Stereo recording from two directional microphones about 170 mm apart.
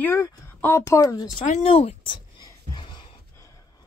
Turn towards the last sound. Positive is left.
turn(degrees=30)  # may be behind; listen again after turning